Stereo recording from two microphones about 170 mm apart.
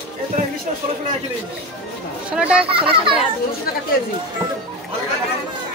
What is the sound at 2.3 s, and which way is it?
Speech, 5° right (ahead or behind).